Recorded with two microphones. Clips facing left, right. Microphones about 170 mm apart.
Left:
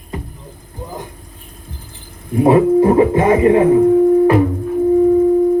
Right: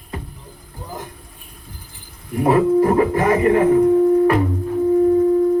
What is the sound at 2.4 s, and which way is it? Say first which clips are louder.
Music: left 4 dB; 20° left (ahead or behind).